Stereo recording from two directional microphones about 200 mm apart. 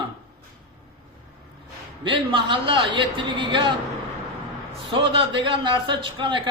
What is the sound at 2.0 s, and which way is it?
A man's voice, 25° right (ahead or behind).